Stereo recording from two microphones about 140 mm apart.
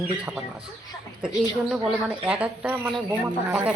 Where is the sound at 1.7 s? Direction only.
10° right (ahead or behind).